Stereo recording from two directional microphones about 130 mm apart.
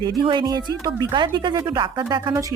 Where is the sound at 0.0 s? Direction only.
35° right (ahead or behind).